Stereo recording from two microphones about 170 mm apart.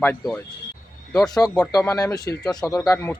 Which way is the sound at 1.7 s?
20° left (ahead or behind).